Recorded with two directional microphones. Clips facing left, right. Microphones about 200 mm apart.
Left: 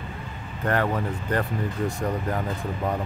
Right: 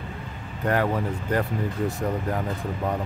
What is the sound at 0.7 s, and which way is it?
Speech, 10° right (ahead or behind).